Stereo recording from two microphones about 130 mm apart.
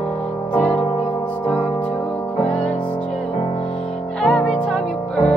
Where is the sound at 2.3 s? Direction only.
60° left (ahead or behind).